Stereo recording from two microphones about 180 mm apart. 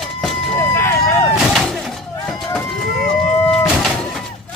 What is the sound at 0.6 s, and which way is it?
Vehicle, 15° left (ahead or behind).